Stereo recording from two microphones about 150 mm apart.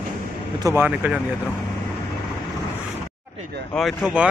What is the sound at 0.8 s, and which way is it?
Speech, 10° right (ahead or behind).